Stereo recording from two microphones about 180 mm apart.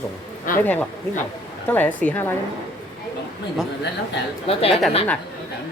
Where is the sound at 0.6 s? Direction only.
10° left (ahead or behind).